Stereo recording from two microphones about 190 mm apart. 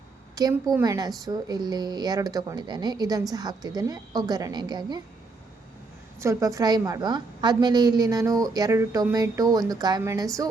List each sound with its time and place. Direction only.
0.4 s a woman's voice: 20° right (ahead or behind)
6.1 s a woman's voice: 15° right (ahead or behind)